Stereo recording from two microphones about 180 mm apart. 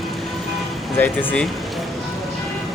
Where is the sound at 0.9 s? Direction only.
10° left (ahead or behind).